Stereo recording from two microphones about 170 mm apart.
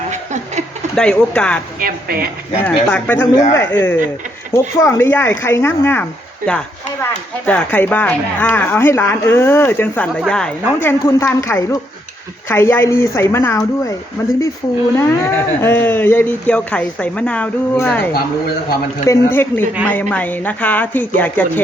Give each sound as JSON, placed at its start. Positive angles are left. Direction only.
{"t": 0.1, "sound": "a sound", "side_deg": -45}
{"t": 0.9, "sound": "speech", "side_deg": 5}
{"t": 1.8, "sound": "a woman's voice", "side_deg": -60}
{"t": 2.6, "sound": "speech", "side_deg": 10}
{"t": 10.8, "sound": "speech", "side_deg": 15}